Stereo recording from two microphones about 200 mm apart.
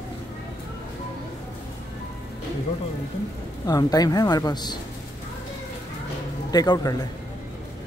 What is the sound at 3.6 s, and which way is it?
Speech, 20° left (ahead or behind).